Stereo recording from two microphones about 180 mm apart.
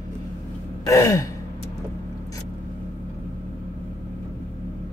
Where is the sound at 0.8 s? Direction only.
15° left (ahead or behind).